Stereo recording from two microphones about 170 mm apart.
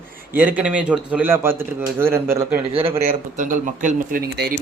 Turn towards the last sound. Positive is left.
turn(degrees=-50)  # may be behind; listen again after turning